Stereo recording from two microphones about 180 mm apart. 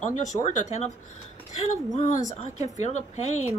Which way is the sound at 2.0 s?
40° left (ahead or behind).